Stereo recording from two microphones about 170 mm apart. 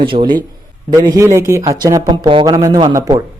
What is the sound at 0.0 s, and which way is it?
A man's voice, 30° right (ahead or behind).